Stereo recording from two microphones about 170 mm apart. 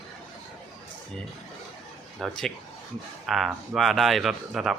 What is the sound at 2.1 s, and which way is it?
Speech, centre (ahead or behind).